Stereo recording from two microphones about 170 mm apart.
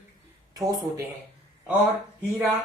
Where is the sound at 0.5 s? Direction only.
20° right (ahead or behind).